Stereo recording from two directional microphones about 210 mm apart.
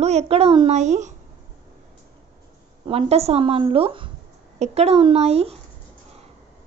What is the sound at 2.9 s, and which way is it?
A woman's voice, 30° right (ahead or behind).